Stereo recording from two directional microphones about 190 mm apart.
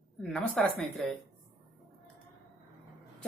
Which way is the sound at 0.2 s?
5° left (ahead or behind).